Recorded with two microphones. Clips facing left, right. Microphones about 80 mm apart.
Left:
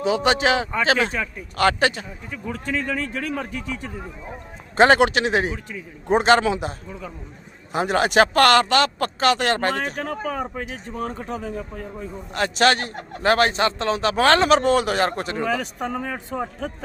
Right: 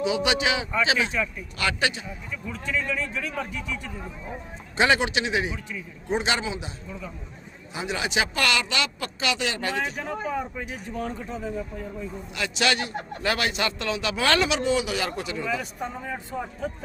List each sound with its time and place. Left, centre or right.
0.0 s a man's voice: left
4.9 s a man's voice: left
6.4 s a man's voice: left
11.3 s speech: left
12.3 s a man's voice: left
15.4 s speech: left